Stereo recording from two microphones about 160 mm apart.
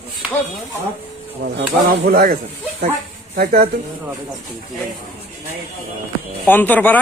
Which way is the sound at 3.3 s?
75° right (ahead or behind).